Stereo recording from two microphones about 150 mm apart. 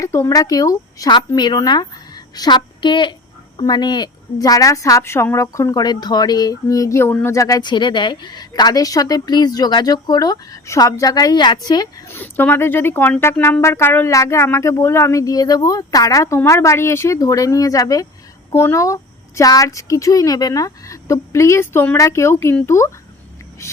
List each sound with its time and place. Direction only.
0.0 s a woman's voice: 20° left (ahead or behind)